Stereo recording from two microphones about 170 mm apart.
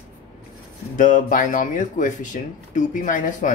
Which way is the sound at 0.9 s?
50° left (ahead or behind).